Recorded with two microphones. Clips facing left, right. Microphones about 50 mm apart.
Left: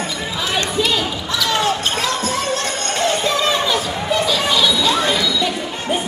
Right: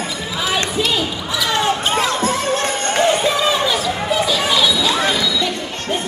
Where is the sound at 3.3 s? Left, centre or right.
Centre.